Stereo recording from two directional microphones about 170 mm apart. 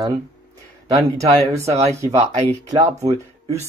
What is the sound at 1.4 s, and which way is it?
Speech, 20° right (ahead or behind).